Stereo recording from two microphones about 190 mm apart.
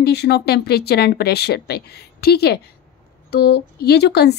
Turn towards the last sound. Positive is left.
turn(degrees=60)  # may be behind; listen again after turning